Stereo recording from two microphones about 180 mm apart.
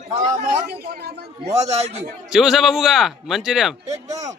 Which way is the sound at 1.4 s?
40° right (ahead or behind).